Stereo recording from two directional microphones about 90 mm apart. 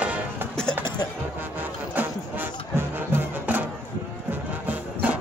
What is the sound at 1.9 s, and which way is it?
Music, 20° right (ahead or behind).